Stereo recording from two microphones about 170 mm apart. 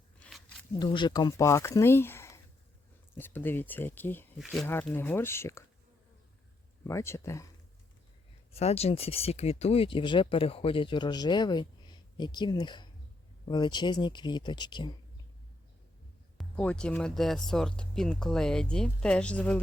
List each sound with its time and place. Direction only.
0.2 s a sound: centre (ahead or behind)
0.8 s speech: 25° left (ahead or behind)
6.8 s speech: 15° left (ahead or behind)
8.5 s speech: 35° left (ahead or behind)
16.4 s speech: 5° left (ahead or behind)